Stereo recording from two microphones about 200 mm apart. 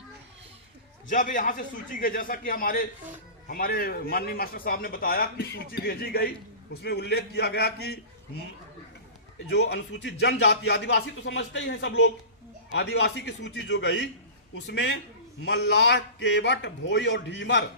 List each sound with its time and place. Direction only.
1.0 s a man's voice: 40° left (ahead or behind)
9.5 s speech: 55° left (ahead or behind)